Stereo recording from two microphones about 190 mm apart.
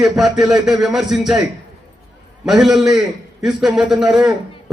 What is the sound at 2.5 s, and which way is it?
A man's voice, centre (ahead or behind).